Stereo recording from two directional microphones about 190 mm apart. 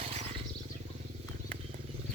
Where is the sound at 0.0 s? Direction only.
35° right (ahead or behind).